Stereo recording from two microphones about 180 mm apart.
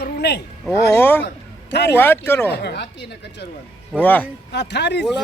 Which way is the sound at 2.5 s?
65° left (ahead or behind).